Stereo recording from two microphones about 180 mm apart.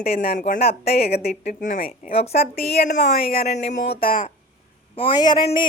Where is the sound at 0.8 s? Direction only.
60° left (ahead or behind).